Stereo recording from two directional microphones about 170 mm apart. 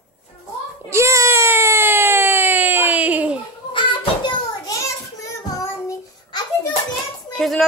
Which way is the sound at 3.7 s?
30° left (ahead or behind).